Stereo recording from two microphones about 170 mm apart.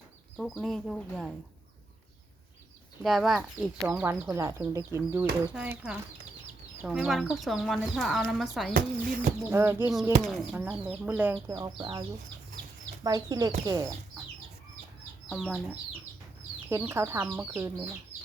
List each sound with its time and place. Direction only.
0.3 s speech: centre (ahead or behind)
3.0 s speech: centre (ahead or behind)
8.7 s speech: 55° right (ahead or behind)
9.5 s speech: 10° right (ahead or behind)
11.5 s speech: 25° right (ahead or behind)
15.3 s speech: centre (ahead or behind)